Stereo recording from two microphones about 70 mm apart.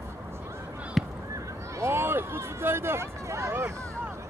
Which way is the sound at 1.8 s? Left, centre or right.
Right.